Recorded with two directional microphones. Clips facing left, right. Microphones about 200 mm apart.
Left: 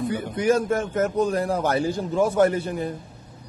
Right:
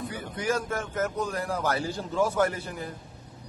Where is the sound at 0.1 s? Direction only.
20° left (ahead or behind).